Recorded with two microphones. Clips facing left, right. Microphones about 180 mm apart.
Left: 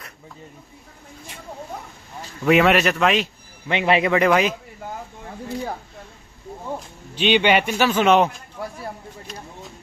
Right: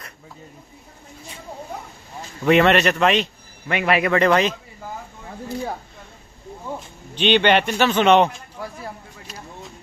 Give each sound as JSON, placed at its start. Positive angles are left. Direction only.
{"t": 2.4, "sound": "speech", "side_deg": 5}
{"t": 3.6, "sound": "a man's voice", "side_deg": 25}
{"t": 4.1, "sound": "speech", "side_deg": 10}
{"t": 7.2, "sound": "speech", "side_deg": 10}